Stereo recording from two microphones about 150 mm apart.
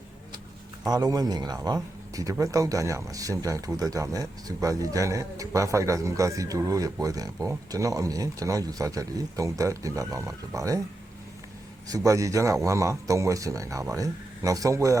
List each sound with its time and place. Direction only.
0.9 s speech: 25° right (ahead or behind)
11.9 s speech: 25° right (ahead or behind)